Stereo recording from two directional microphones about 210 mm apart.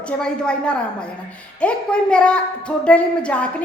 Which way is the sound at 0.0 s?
5° left (ahead or behind).